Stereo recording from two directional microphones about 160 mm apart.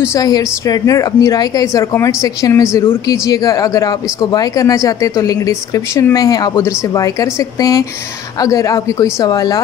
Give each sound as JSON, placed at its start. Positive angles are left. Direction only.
{"t": 0.0, "sound": "speech", "side_deg": 20}